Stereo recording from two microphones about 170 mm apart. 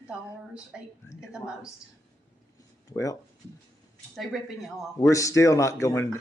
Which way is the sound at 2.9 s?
20° left (ahead or behind).